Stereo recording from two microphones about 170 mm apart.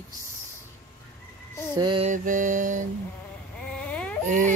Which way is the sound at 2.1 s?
50° right (ahead or behind).